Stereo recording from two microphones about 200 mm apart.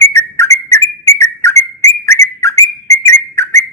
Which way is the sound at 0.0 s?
15° left (ahead or behind).